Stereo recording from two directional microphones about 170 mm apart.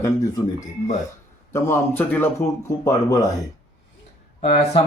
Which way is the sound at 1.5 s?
15° left (ahead or behind).